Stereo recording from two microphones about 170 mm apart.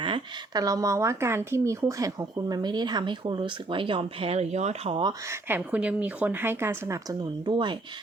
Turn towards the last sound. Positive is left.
turn(degrees=-25)  # may be behind; listen again after turning